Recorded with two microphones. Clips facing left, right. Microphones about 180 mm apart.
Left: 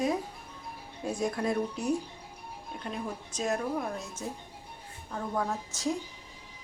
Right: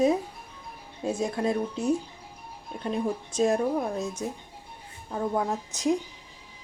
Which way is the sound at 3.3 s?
30° right (ahead or behind).